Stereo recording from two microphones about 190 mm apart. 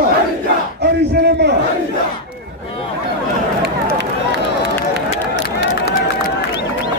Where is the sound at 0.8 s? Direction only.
60° right (ahead or behind).